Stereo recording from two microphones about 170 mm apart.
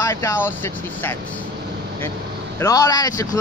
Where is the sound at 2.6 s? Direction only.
20° left (ahead or behind).